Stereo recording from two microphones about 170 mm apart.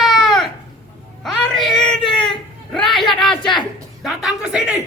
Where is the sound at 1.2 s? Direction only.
Centre (ahead or behind).